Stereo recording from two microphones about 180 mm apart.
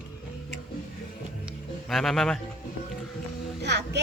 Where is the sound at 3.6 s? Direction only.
70° right (ahead or behind).